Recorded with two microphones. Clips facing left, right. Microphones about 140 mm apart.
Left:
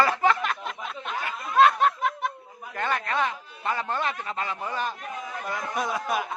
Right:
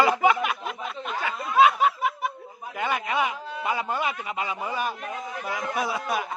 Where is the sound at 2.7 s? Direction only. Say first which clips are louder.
Right 1 dB; 10° right (ahead or behind).